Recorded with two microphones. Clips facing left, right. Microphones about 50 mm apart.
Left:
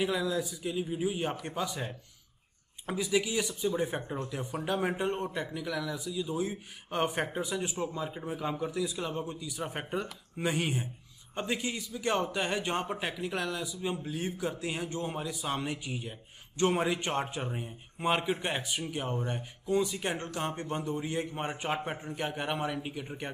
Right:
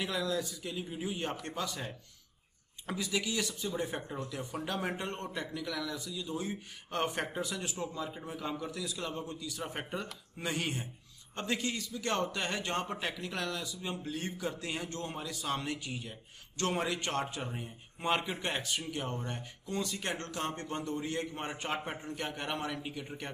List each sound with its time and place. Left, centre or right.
0.0 s a man's voice: centre